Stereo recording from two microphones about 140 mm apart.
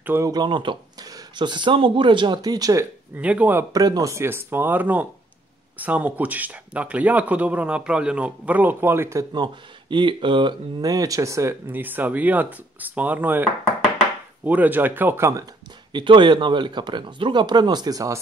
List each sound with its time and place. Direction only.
0.0 s speech: 15° right (ahead or behind)
0.3 s speech: 35° right (ahead or behind)
3.2 s speech: 10° right (ahead or behind)
3.7 s speech: 25° right (ahead or behind)
9.3 s speech: 35° right (ahead or behind)
15.9 s speech: 35° right (ahead or behind)